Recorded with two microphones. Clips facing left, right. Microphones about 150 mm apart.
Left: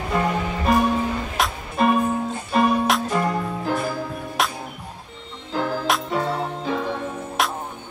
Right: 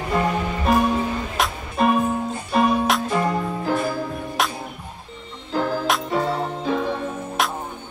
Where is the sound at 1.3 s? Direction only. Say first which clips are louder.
Even; centre (ahead or behind).